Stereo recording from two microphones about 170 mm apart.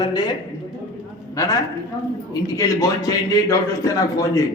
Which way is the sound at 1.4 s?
20° left (ahead or behind).